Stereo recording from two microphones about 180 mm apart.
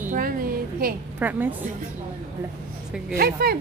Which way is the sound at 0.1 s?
50° right (ahead or behind).